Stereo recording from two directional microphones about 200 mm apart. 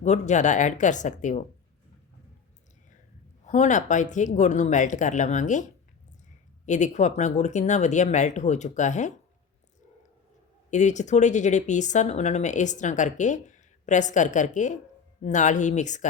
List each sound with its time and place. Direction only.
0.0 s speech: 35° left (ahead or behind)
3.4 s speech: 35° left (ahead or behind)
10.7 s speech: 35° left (ahead or behind)